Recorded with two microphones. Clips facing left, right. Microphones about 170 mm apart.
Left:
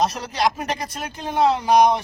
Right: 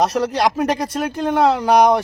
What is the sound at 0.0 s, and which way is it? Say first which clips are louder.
Speech: right 4 dB; 65° right (ahead or behind).